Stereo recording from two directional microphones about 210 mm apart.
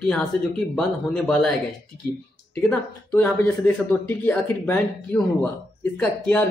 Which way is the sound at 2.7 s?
10° left (ahead or behind).